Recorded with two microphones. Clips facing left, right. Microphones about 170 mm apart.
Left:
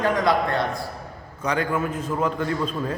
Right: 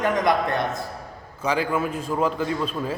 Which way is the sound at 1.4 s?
10° right (ahead or behind).